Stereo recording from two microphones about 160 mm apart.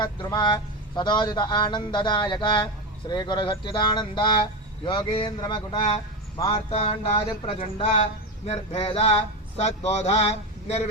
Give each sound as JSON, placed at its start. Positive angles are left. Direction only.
{"t": 0.0, "sound": "a man's voice", "side_deg": 25}